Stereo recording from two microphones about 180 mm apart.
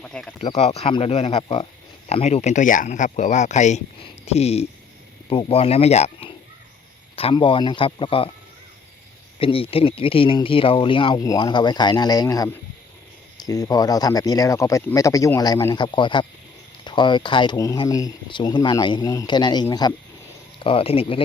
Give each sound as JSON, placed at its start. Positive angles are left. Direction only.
{"t": 0.0, "sound": "speech", "side_deg": 5}
{"t": 0.4, "sound": "speech", "side_deg": 35}
{"t": 9.4, "sound": "speech", "side_deg": 30}